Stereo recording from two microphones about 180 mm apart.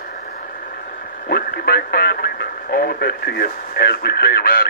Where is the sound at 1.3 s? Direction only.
60° left (ahead or behind).